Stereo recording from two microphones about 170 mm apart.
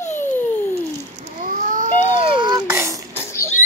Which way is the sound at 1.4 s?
50° right (ahead or behind).